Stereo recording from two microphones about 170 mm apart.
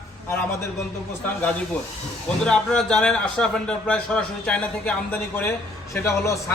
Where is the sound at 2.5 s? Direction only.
5° left (ahead or behind).